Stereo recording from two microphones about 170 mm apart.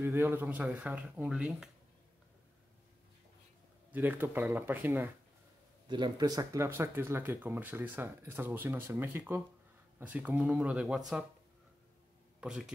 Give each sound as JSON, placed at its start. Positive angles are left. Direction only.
{"t": 0.0, "sound": "speech", "side_deg": -15}
{"t": 3.9, "sound": "speech", "side_deg": -10}
{"t": 5.9, "sound": "speech", "side_deg": -25}
{"t": 12.4, "sound": "speech", "side_deg": -5}